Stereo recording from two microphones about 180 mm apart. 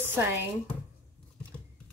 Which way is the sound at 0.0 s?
10° right (ahead or behind).